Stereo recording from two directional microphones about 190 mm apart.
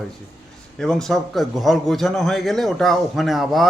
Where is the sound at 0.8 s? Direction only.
Centre (ahead or behind).